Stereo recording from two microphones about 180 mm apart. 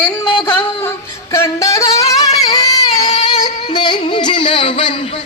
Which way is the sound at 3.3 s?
25° left (ahead or behind).